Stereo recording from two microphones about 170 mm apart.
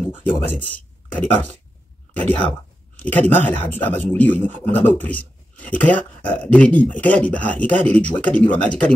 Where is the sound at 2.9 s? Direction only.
10° left (ahead or behind).